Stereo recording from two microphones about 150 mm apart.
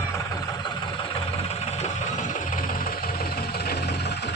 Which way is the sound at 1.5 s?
45° left (ahead or behind).